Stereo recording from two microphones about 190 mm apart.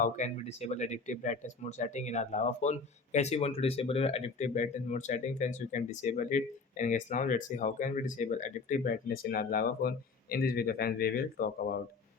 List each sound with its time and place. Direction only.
0.0 s speech: 40° left (ahead or behind)